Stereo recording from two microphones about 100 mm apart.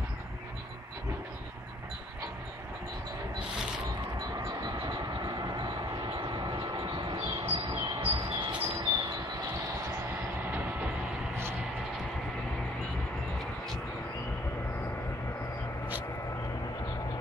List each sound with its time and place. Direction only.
4.6 s train: 40° right (ahead or behind)
10.5 s train: 15° right (ahead or behind)